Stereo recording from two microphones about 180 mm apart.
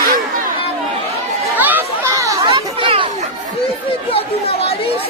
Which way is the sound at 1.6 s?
10° right (ahead or behind).